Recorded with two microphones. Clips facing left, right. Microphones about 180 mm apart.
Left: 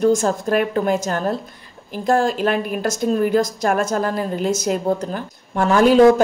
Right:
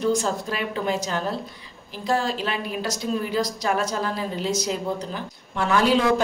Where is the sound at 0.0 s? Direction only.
50° left (ahead or behind).